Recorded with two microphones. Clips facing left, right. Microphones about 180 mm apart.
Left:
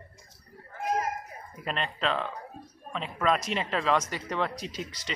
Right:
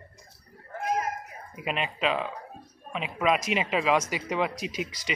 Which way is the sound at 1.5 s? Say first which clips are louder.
Right 2 dB; 10° right (ahead or behind).